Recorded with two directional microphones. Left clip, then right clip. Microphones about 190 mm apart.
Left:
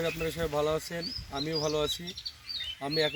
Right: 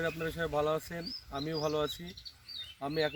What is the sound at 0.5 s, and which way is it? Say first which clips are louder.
Speech: left 2 dB; 25° right (ahead or behind).